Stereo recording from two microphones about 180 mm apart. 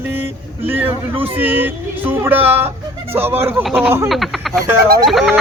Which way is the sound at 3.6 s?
Centre (ahead or behind).